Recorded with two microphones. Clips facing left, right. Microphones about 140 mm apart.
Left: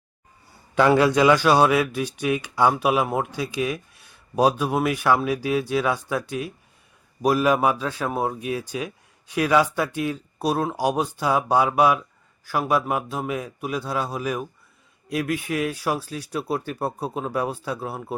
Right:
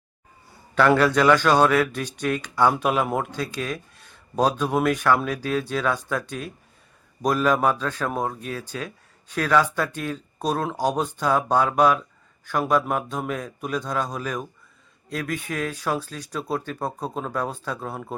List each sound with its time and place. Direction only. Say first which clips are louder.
0.8 s speech: left 1 dB; 15° left (ahead or behind)